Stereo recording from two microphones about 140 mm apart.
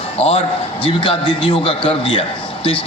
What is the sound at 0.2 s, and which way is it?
A man's voice, 45° left (ahead or behind).